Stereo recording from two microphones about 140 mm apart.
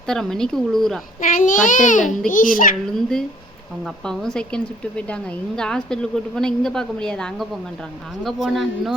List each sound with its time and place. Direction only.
0.1 s speech: 5° left (ahead or behind)
1.2 s a child's voice: 70° left (ahead or behind)
2.8 s speech: 5° left (ahead or behind)